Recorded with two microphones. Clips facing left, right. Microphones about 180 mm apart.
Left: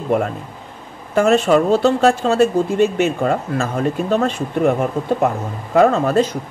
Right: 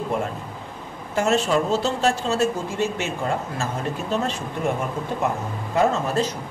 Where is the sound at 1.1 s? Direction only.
60° left (ahead or behind).